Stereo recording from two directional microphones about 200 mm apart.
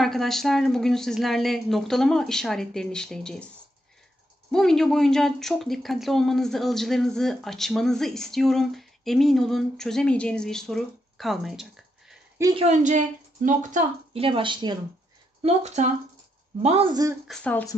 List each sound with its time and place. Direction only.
0.0 s speech: centre (ahead or behind)
4.5 s speech: centre (ahead or behind)
12.5 s speech: 35° right (ahead or behind)
15.4 s speech: 35° right (ahead or behind)
17.3 s a sound: 5° left (ahead or behind)